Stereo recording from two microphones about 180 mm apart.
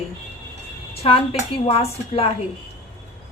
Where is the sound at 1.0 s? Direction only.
35° left (ahead or behind).